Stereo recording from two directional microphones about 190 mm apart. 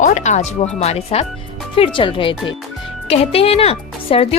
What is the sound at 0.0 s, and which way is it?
Speech, 40° left (ahead or behind).